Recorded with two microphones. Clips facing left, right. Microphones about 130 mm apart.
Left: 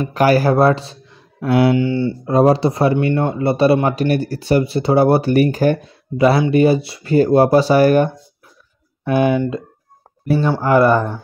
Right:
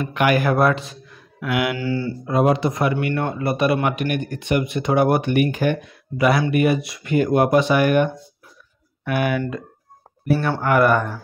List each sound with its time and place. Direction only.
0.0 s speech: 35° left (ahead or behind)
2.2 s speech: 35° left (ahead or behind)
9.0 s speech: 25° left (ahead or behind)
10.6 s speech: 30° left (ahead or behind)